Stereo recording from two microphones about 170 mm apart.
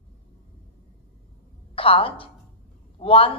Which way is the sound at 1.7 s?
30° left (ahead or behind).